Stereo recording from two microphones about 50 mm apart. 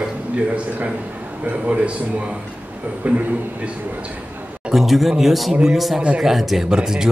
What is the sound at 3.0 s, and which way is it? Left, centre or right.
Speech, right.